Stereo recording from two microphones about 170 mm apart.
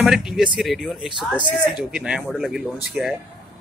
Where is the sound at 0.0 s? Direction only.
5° right (ahead or behind).